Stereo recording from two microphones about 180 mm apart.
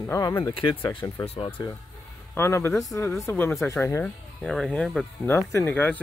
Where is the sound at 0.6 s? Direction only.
30° left (ahead or behind).